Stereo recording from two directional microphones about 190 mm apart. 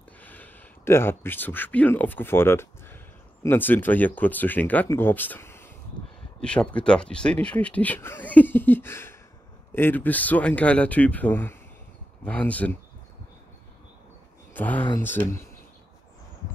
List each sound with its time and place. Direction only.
0.2 s speech: 10° left (ahead or behind)
14.5 s speech: 10° left (ahead or behind)